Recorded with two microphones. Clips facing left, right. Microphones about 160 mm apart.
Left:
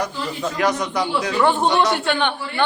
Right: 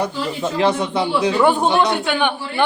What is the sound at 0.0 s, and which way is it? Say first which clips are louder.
A man's voice: right 3 dB; 25° right (ahead or behind).